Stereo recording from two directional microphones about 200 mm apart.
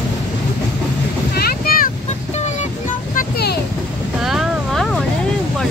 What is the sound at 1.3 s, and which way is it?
Boat, 50° left (ahead or behind).